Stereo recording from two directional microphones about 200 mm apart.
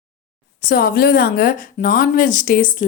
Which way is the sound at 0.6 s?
50° left (ahead or behind).